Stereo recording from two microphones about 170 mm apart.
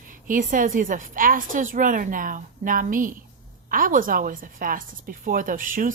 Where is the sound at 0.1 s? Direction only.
55° right (ahead or behind).